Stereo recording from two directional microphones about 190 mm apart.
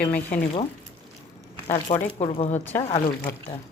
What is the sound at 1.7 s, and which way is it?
Speech, 30° left (ahead or behind).